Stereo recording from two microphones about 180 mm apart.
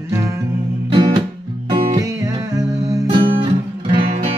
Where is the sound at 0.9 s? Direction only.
25° right (ahead or behind).